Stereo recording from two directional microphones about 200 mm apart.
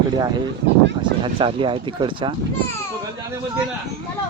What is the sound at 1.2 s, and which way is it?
Speech, 25° right (ahead or behind).